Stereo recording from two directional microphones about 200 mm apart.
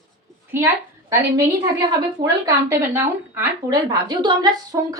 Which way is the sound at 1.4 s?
15° right (ahead or behind).